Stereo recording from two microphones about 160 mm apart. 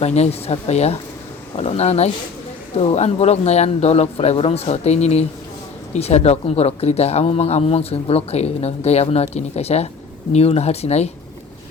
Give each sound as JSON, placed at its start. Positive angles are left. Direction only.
{"t": 0.0, "sound": "speech", "side_deg": 45}